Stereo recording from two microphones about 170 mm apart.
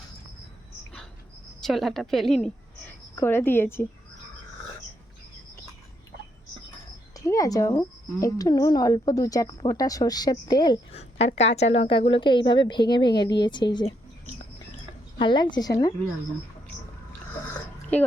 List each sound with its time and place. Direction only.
1.6 s a woman's voice: centre (ahead or behind)
7.3 s speech: 20° left (ahead or behind)
10.9 s speech: 40° left (ahead or behind)
15.2 s speech: 25° left (ahead or behind)